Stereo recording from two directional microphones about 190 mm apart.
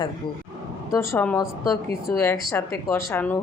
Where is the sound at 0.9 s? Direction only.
10° left (ahead or behind).